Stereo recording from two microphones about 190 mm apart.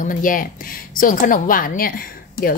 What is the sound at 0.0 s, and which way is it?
A woman's voice, 45° left (ahead or behind).